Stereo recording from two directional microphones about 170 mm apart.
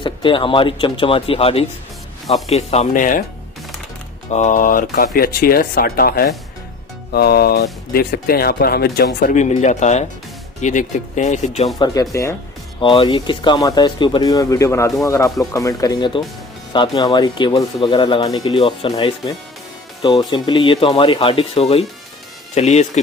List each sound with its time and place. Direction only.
0.0 s speech: 30° left (ahead or behind); by 3.3 s 50° left (ahead or behind)
4.3 s speech: 45° left (ahead or behind); by 9.3 s 65° left (ahead or behind)
9.3 s speech: 45° left (ahead or behind)
11.8 s speech: 20° left (ahead or behind)
12.8 s speech: 30° left (ahead or behind)